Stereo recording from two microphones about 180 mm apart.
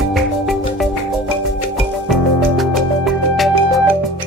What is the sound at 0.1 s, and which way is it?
Music, centre (ahead or behind).